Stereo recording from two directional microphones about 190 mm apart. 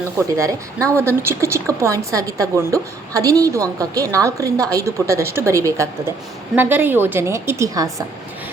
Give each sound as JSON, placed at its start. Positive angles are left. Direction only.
{"t": 0.3, "sound": "a woman's voice", "side_deg": -15}